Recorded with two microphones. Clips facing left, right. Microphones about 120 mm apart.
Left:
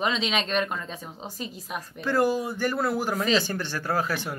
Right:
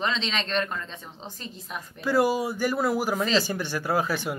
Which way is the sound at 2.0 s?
10° right (ahead or behind).